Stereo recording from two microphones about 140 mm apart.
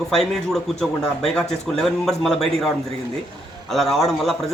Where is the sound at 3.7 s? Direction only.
Centre (ahead or behind).